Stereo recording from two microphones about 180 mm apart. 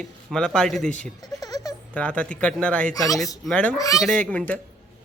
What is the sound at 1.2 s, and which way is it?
Baby laughter, 20° left (ahead or behind).